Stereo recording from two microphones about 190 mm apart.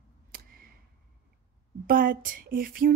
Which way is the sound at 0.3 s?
50° right (ahead or behind).